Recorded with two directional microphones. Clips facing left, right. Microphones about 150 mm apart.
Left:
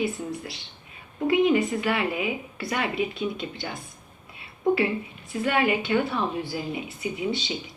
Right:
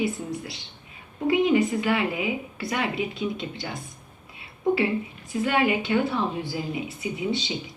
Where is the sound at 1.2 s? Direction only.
20° right (ahead or behind).